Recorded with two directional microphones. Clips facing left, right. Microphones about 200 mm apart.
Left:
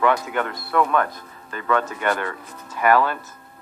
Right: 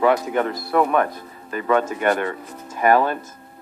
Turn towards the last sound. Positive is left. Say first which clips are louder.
# right 1 dB
turn(degrees=-20)  # may be behind; listen again after turning